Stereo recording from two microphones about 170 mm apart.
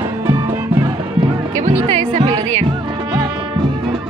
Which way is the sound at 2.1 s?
25° right (ahead or behind).